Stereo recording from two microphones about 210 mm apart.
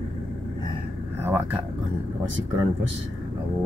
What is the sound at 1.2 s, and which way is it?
Speech, 10° right (ahead or behind).